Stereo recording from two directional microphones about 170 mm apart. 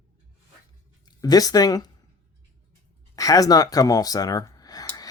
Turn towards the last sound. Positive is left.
turn(degrees=20)  # may be behind; listen again after turning